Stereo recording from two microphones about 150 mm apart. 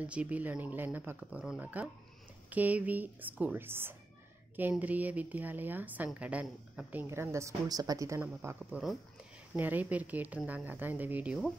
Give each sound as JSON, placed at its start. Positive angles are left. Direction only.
{"t": 0.0, "sound": "a woman's voice", "side_deg": -10}